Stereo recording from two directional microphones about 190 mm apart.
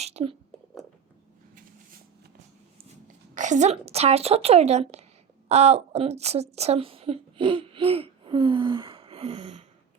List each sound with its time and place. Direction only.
0.0 s speech: 35° right (ahead or behind)
3.3 s a woman's voice: 40° right (ahead or behind)